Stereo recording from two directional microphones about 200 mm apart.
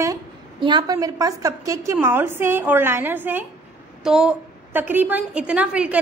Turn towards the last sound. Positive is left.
turn(degrees=-5)  # may be behind; listen again after turning